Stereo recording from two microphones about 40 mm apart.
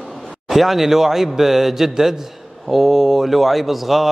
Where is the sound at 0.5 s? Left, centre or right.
Centre.